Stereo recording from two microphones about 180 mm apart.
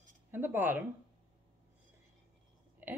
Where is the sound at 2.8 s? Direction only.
10° right (ahead or behind).